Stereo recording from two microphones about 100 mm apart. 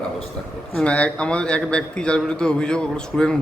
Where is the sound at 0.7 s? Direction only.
10° left (ahead or behind).